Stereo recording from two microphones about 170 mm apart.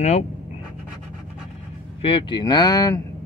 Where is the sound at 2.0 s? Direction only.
30° left (ahead or behind).